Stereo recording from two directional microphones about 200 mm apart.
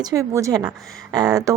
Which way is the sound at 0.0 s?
15° right (ahead or behind).